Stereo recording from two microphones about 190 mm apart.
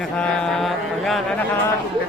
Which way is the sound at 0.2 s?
5° left (ahead or behind).